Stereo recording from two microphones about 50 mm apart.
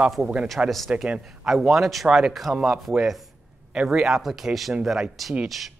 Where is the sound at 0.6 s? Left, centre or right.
Centre.